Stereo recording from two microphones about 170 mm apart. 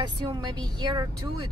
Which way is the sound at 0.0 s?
25° right (ahead or behind).